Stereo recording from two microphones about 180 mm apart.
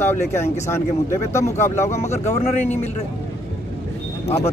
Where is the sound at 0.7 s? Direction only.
15° left (ahead or behind).